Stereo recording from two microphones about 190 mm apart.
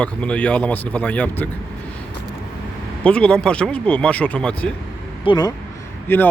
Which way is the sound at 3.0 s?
5° left (ahead or behind).